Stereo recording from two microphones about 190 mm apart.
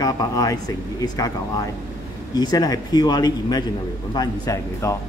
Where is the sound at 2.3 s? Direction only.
20° left (ahead or behind).